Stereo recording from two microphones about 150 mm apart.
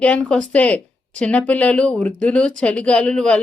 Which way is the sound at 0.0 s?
5° left (ahead or behind).